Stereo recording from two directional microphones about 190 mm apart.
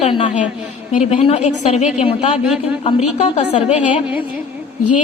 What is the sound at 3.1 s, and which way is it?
Speech, 35° left (ahead or behind).